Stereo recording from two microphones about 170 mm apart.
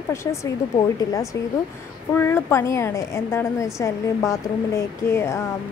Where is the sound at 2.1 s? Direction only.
15° left (ahead or behind).